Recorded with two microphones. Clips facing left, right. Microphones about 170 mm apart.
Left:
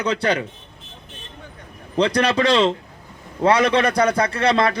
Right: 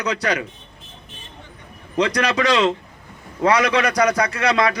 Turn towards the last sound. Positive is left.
turn(degrees=30)  # may be behind; listen again after turning